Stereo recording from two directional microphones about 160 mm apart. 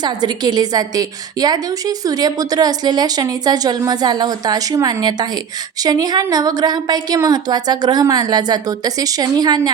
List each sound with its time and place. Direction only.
0.0 s a woman's voice: 25° right (ahead or behind)